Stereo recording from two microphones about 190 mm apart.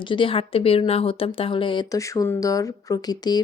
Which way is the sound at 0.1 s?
25° left (ahead or behind).